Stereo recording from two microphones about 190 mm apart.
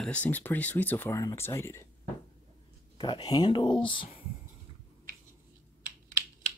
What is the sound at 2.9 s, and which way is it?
Speech, 25° left (ahead or behind).